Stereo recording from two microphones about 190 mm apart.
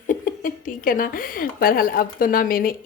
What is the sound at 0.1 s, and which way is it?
A woman's voice, 45° left (ahead or behind).